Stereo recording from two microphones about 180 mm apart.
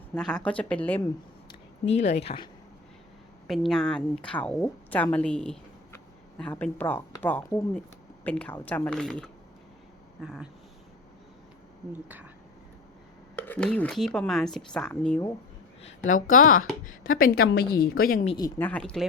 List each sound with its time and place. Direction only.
0.1 s speech: 5° left (ahead or behind)
1.8 s speech: 40° left (ahead or behind)
3.4 s speech: centre (ahead or behind)
12.0 s a woman's voice: 10° right (ahead or behind)
13.3 s speech: 5° left (ahead or behind)
15.8 s a woman's voice: 40° left (ahead or behind); by 18.2 s 55° left (ahead or behind)
18.6 s speech: 5° left (ahead or behind)